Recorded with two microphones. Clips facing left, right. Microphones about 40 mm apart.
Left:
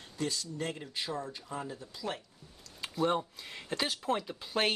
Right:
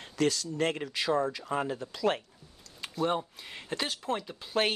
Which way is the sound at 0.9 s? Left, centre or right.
Right.